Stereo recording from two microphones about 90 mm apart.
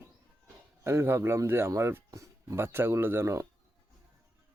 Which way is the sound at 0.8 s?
30° right (ahead or behind).